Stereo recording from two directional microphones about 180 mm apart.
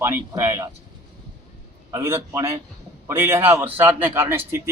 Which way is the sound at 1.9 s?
15° right (ahead or behind).